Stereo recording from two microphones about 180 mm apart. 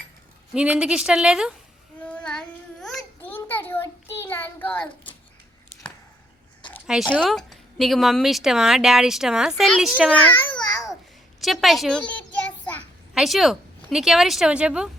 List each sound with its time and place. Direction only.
0.5 s a woman's voice: 5° right (ahead or behind)
2.0 s child singing: 5° left (ahead or behind)
2.8 s a sound: centre (ahead or behind)
3.3 s child singing: 10° left (ahead or behind)
6.8 s a woman's voice: 5° right (ahead or behind)
11.3 s a sound: centre (ahead or behind)
13.1 s a woman's voice: centre (ahead or behind)